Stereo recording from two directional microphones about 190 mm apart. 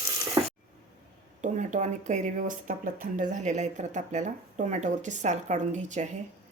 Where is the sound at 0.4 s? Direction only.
20° right (ahead or behind).